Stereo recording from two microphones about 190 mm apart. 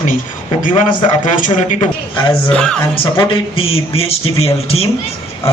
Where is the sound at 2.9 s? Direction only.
25° left (ahead or behind).